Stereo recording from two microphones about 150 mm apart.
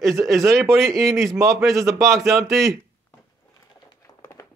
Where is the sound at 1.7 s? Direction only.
20° right (ahead or behind).